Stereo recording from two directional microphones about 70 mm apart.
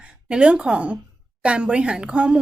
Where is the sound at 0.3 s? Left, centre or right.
Centre.